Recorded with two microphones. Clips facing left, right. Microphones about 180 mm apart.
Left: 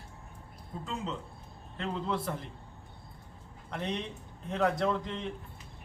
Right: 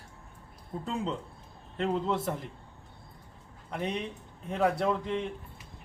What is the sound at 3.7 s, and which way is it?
A man's voice, 5° right (ahead or behind).